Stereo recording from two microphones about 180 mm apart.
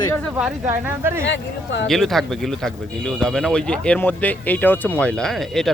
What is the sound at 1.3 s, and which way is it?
Speech, 80° left.